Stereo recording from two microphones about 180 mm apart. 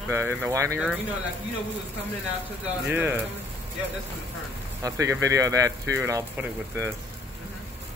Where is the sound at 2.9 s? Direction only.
10° right (ahead or behind).